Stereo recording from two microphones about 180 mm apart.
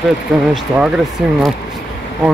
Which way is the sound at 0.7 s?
5° right (ahead or behind).